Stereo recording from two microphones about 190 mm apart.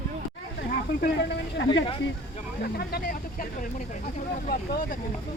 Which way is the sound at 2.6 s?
55° left (ahead or behind).